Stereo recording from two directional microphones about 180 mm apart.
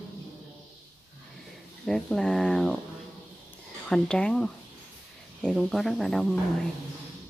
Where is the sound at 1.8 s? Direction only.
Centre (ahead or behind).